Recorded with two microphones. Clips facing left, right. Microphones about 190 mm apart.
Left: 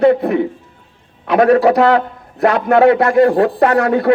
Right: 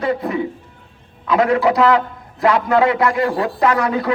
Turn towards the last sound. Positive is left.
turn(degrees=65)  # may be behind; listen again after turning